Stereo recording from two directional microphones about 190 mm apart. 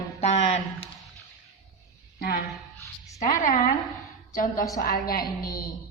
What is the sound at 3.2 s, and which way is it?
Speech, 40° left (ahead or behind).